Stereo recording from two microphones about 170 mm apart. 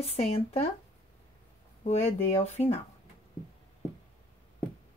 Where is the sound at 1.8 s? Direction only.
40° left (ahead or behind).